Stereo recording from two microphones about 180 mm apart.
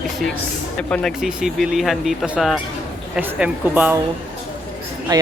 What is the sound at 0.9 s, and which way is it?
Speech, 5° left (ahead or behind).